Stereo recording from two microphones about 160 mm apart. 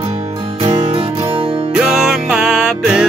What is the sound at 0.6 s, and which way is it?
Music, 35° right (ahead or behind).